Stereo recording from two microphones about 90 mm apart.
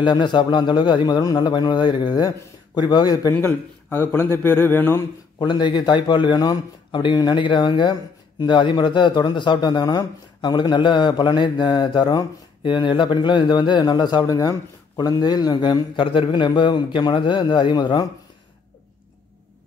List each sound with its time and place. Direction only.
0.0 s a man's voice: 55° left (ahead or behind)
3.3 s speech: 25° left (ahead or behind)
5.4 s speech: 55° left (ahead or behind)